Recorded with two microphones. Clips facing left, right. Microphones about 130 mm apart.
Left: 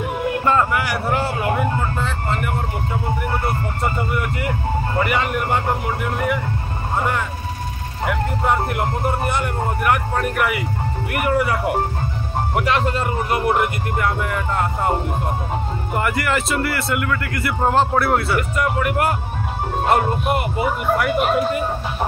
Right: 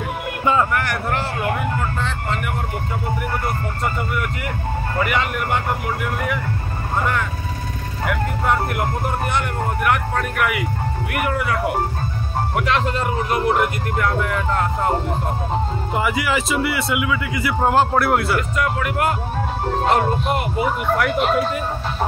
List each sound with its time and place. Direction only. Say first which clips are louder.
0.5 s a man's voice: right 1 dB; centre (ahead or behind)
4.9 s a man's voice: even; 5° left (ahead or behind)
8.1 s a man's voice: left 1 dB; centre (ahead or behind)